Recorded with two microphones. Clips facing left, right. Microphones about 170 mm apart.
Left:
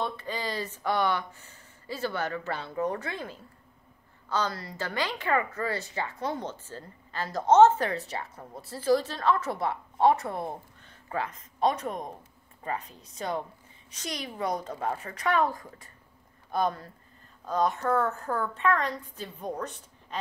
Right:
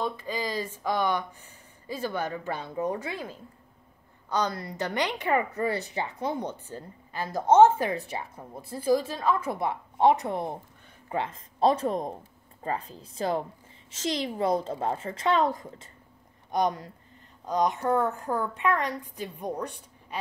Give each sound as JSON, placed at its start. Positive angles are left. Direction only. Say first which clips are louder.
{"t": 0.0, "sound": "a woman's voice", "louder": "right 2 dB", "side_deg": -10}